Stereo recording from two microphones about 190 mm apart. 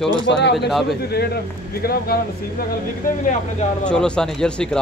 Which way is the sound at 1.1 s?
55° left (ahead or behind).